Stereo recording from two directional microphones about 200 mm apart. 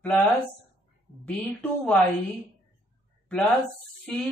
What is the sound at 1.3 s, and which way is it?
Speech, 5° left (ahead or behind).